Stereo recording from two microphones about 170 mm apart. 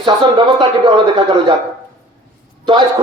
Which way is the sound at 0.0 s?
25° right (ahead or behind).